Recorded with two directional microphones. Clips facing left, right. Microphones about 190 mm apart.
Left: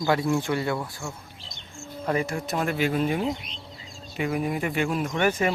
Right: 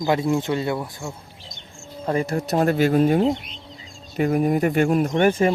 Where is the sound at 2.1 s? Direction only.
35° right (ahead or behind).